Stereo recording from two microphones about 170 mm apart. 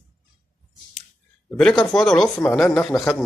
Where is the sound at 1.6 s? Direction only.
Centre (ahead or behind).